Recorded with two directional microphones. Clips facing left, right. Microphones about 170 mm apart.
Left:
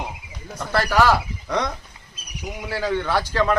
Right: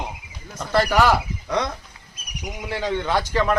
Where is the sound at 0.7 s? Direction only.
15° right (ahead or behind).